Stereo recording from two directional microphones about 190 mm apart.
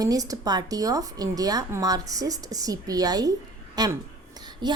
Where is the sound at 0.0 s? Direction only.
20° right (ahead or behind).